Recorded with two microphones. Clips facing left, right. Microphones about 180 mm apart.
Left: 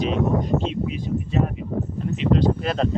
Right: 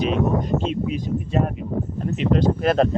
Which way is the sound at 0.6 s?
50° right (ahead or behind).